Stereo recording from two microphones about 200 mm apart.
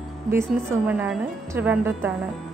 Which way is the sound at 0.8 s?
5° right (ahead or behind).